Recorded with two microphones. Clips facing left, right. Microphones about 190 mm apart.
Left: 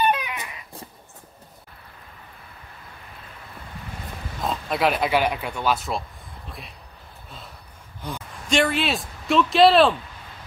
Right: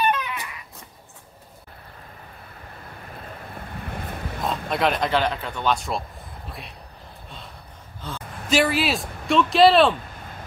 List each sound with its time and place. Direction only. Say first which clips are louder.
0.1 s dog: left 1 dB; 15° left (ahead or behind)
3.8 s vehicle: right 5 dB; 60° right (ahead or behind)
4.4 s speech: even; centre (ahead or behind)
8.0 s a woman's voice: left 2 dB; 15° left (ahead or behind)
8.5 s speech: right 1 dB; 5° right (ahead or behind)